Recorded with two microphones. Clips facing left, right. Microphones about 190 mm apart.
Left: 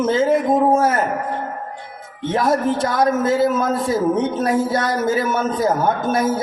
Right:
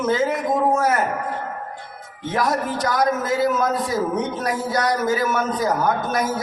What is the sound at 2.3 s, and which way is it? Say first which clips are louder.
A man's voice: left 4 dB; 25° left (ahead or behind).